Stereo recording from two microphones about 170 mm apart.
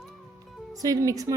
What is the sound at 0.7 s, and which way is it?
Speech, 20° right (ahead or behind).